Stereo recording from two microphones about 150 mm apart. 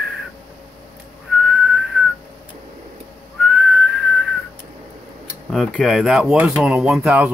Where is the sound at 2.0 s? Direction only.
Centre (ahead or behind).